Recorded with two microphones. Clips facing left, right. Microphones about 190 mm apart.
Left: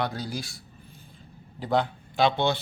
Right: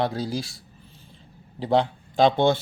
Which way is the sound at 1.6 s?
30° right (ahead or behind).